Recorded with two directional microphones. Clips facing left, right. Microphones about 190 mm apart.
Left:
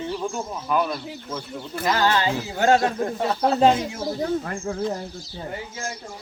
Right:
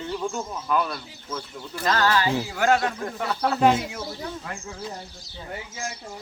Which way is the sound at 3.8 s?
40° left (ahead or behind).